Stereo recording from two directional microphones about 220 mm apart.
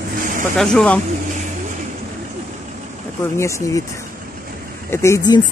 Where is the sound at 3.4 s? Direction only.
15° left (ahead or behind).